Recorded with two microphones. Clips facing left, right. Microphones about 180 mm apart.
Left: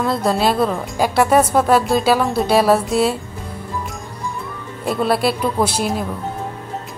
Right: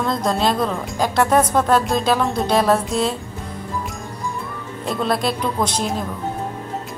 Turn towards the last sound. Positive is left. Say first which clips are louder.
# left 3 dB
turn(degrees=10)  # may be behind; listen again after turning